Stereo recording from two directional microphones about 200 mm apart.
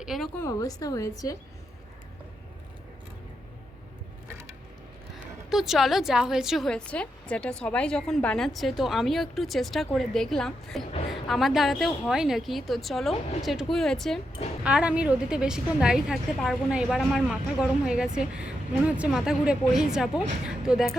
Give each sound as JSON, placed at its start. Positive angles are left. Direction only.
{"t": 0.0, "sound": "a sound", "side_deg": 0}
{"t": 0.4, "sound": "a woman's voice", "side_deg": 15}
{"t": 5.5, "sound": "a woman's voice", "side_deg": 0}